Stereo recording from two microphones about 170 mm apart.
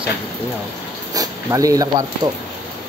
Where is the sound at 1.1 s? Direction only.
20° right (ahead or behind).